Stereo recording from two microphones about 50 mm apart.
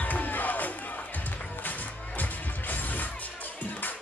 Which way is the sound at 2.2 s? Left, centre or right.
Left.